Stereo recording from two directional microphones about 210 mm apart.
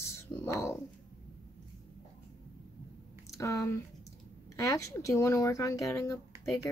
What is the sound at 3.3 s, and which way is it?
Speech, 15° left (ahead or behind).